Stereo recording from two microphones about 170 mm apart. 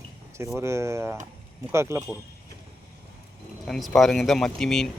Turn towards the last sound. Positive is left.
turn(degrees=0)  # may be behind; listen again after turning